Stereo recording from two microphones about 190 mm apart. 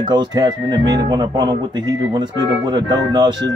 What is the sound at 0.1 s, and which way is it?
Speech, 20° right (ahead or behind).